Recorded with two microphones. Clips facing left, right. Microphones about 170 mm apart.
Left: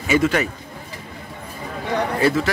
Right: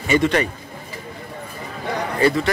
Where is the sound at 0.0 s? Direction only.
5° left (ahead or behind).